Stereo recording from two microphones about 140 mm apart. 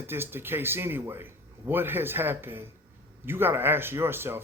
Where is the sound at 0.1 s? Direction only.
15° right (ahead or behind).